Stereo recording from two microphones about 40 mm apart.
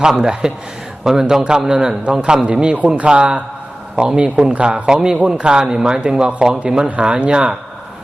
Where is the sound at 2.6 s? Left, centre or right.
Right.